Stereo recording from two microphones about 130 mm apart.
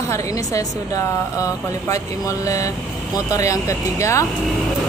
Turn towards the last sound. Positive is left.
turn(degrees=25)  # may be behind; listen again after turning